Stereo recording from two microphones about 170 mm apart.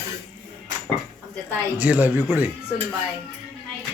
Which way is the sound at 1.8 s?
10° right (ahead or behind).